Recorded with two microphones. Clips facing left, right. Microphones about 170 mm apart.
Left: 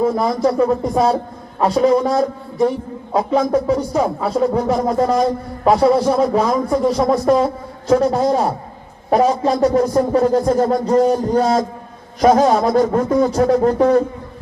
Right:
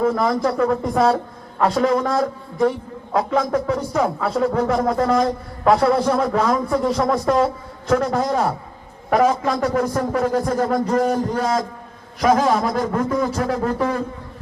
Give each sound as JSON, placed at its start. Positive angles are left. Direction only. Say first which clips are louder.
{"t": 0.0, "sound": "a man's voice", "louder": "left 2 dB", "side_deg": 20}